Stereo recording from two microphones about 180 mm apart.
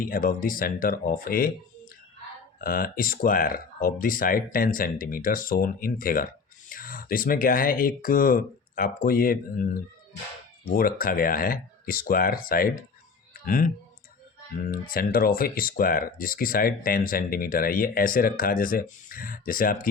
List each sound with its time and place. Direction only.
0.0 s speech: 50° left (ahead or behind)
2.6 s speech: 50° left (ahead or behind)